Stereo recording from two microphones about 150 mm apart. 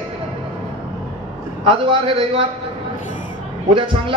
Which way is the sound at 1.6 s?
35° right (ahead or behind).